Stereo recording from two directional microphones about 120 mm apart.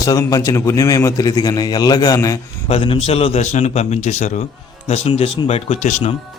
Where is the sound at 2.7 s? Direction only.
50° left (ahead or behind); by 4.3 s 75° left (ahead or behind).